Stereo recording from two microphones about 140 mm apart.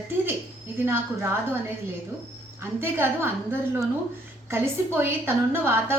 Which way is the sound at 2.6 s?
15° right (ahead or behind).